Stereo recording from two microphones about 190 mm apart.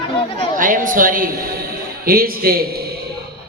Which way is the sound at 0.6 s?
45° right (ahead or behind).